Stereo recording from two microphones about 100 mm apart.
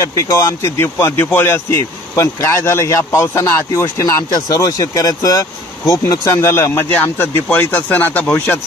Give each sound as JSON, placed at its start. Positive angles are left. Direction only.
{"t": 0.0, "sound": "speech", "side_deg": 30}